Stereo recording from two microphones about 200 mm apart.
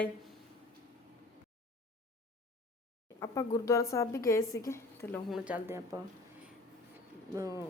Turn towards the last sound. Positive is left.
turn(degrees=-15)  # may be behind; listen again after turning